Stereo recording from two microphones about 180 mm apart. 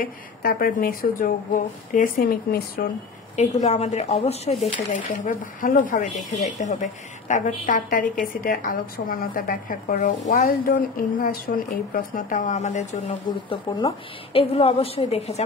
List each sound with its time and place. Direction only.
0.0 s a woman's voice: 55° left (ahead or behind)
3.3 s a woman's voice: 40° left (ahead or behind); by 9.8 s 55° left (ahead or behind)
9.8 s a woman's voice: 40° left (ahead or behind)
13.3 s a woman's voice: 25° left (ahead or behind)